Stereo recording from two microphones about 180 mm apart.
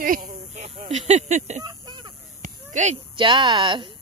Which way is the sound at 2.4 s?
40° right (ahead or behind).